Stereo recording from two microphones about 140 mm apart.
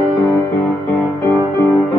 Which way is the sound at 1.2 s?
20° left (ahead or behind).